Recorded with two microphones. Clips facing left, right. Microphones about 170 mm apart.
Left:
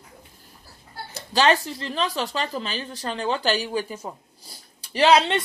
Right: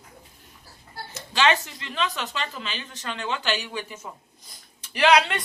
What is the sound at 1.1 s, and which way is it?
Speech, 35° left (ahead or behind).